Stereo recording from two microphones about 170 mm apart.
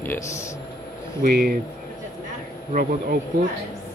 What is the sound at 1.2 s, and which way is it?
Speech, 60° right (ahead or behind).